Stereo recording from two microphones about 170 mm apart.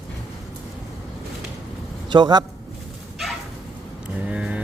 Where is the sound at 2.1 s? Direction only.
25° right (ahead or behind).